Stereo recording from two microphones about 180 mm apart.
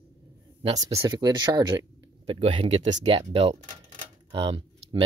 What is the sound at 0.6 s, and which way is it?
Speech, 20° right (ahead or behind).